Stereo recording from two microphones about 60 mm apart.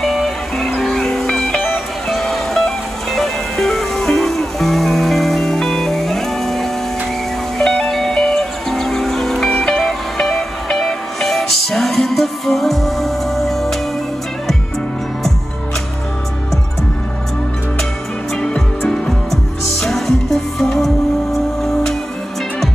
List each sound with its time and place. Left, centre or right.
0.0 s music: centre
1.3 s music: centre
2.0 s music: centre
18.3 s music: centre